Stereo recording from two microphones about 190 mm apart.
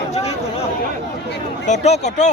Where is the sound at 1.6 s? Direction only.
35° left (ahead or behind).